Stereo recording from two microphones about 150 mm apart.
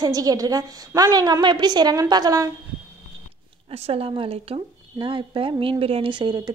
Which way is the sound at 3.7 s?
40° right (ahead or behind).